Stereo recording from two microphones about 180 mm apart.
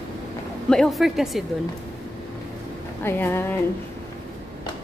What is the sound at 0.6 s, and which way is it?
Speech, 5° left (ahead or behind).